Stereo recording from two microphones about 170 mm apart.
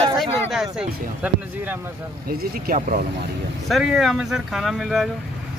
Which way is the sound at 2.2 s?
60° right (ahead or behind).